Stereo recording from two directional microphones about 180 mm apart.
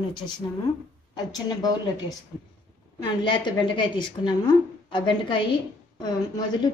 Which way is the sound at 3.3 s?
25° left (ahead or behind).